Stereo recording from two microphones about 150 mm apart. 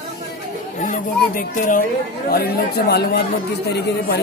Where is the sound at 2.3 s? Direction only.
90° left.